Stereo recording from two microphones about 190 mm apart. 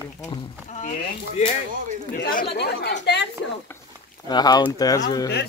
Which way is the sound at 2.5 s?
60° left (ahead or behind).